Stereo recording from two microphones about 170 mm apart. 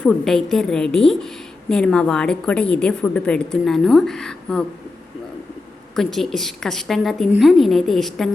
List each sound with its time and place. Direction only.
0.0 s a woman's voice: centre (ahead or behind)
6.0 s a woman's voice: centre (ahead or behind)